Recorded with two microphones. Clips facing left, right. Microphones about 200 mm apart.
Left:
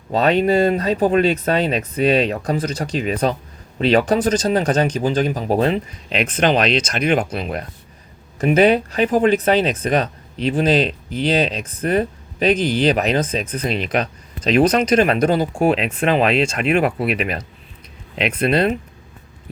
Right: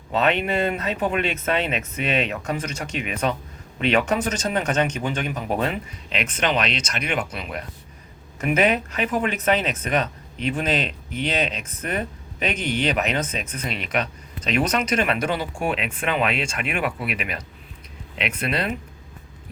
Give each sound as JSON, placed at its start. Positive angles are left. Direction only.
{"t": 0.1, "sound": "speech", "side_deg": 35}